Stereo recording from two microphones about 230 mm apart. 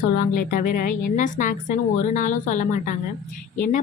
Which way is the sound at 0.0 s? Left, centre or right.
Left.